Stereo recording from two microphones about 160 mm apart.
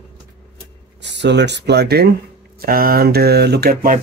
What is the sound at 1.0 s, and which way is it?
Speech, 90° right.